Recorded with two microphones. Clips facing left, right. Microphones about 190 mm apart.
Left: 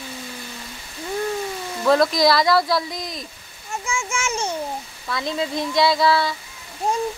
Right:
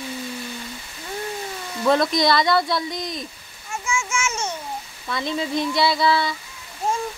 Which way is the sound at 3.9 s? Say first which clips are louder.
Even; 35° left (ahead or behind).